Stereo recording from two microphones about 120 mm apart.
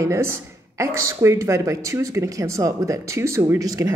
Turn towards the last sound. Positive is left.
turn(degrees=-30)  # may be behind; listen again after turning